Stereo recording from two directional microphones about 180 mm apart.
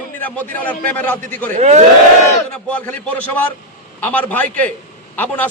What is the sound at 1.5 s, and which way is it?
Speech, 40° right (ahead or behind).